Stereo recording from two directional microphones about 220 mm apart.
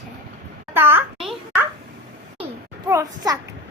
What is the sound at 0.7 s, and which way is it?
Speech, 10° right (ahead or behind).